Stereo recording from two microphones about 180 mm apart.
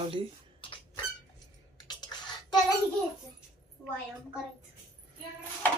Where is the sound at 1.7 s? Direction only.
25° left (ahead or behind).